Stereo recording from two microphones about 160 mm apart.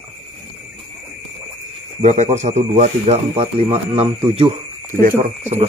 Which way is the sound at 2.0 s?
45° right (ahead or behind).